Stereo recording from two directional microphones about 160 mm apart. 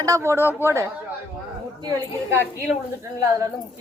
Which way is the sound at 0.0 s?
20° right (ahead or behind).